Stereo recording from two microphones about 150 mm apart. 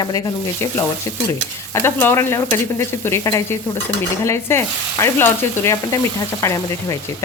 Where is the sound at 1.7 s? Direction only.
15° left (ahead or behind).